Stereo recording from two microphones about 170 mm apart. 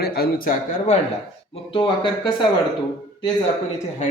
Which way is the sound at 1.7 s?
30° left (ahead or behind).